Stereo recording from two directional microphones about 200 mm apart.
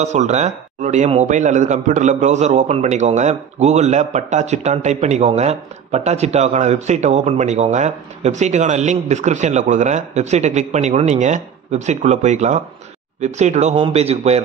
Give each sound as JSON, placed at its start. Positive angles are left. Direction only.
{"t": 0.0, "sound": "a man's voice", "side_deg": -35}